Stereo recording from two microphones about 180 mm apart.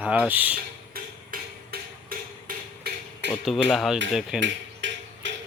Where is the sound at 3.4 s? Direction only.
Centre (ahead or behind).